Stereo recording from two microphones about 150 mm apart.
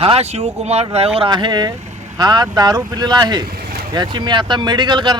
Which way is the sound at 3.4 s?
90° right.